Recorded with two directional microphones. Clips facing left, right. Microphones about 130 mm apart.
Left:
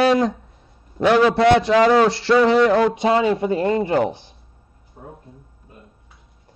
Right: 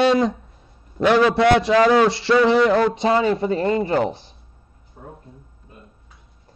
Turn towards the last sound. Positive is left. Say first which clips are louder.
# left 1 dB
turn(degrees=35)  # may be behind; listen again after turning